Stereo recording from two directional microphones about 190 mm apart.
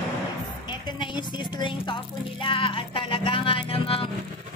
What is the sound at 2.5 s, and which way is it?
Speech, 25° left (ahead or behind).